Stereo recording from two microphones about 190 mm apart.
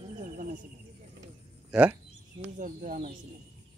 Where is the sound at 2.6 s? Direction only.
45° right (ahead or behind).